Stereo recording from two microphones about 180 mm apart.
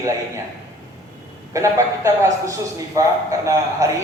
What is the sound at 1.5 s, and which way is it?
Speech, 15° right (ahead or behind).